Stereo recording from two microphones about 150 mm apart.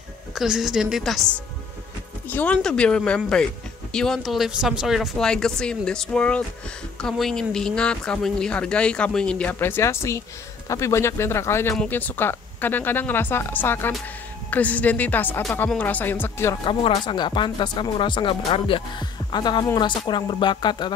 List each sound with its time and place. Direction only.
0.3 s speech: 5° right (ahead or behind); by 16.5 s 15° left (ahead or behind)
16.6 s speech: 35° left (ahead or behind)